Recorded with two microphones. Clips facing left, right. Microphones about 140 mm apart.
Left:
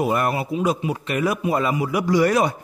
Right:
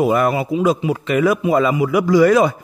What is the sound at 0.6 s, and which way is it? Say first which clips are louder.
Speech: right 5 dB; 90° right.